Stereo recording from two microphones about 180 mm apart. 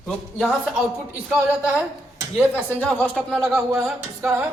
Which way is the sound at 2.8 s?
10° left (ahead or behind).